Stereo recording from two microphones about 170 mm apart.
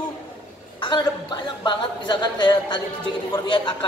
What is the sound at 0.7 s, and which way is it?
A woman's voice, 25° left (ahead or behind).